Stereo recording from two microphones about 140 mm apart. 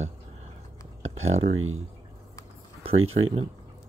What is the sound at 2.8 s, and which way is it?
Speech, 40° right (ahead or behind).